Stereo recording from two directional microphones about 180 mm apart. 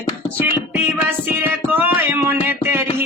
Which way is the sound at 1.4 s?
10° right (ahead or behind).